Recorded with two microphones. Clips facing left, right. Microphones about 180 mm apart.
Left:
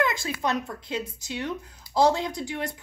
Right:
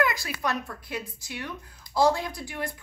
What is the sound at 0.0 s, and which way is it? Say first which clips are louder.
Speech: left 1 dB; 25° left (ahead or behind).